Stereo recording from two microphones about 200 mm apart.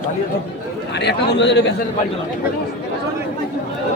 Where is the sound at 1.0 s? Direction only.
55° left (ahead or behind).